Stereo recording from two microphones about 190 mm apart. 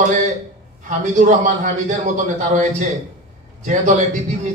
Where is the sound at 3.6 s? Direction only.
40° right (ahead or behind).